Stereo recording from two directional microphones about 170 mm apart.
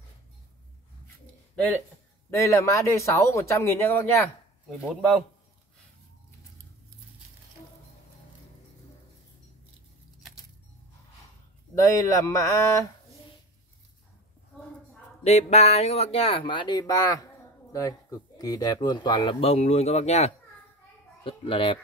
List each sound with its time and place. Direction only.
2.3 s speech: 15° left (ahead or behind)
4.8 s a man's voice: centre (ahead or behind)
11.9 s speech: 20° left (ahead or behind)
15.2 s a child's voice: 40° left (ahead or behind)